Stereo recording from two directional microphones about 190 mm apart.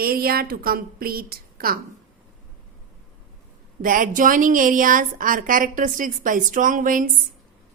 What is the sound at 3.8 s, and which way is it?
A woman's voice, 45° right (ahead or behind).